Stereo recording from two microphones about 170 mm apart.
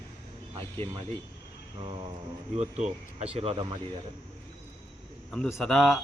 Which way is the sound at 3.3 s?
35° right (ahead or behind).